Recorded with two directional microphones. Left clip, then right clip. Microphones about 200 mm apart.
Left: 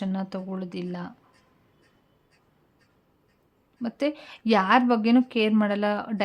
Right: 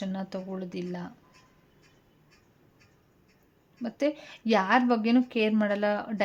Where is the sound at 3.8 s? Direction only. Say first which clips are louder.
Left 1 dB; 10° left (ahead or behind).